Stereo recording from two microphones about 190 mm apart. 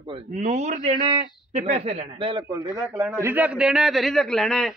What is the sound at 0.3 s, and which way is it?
A man's voice, 40° right (ahead or behind).